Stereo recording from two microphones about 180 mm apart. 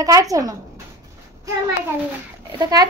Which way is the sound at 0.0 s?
20° right (ahead or behind).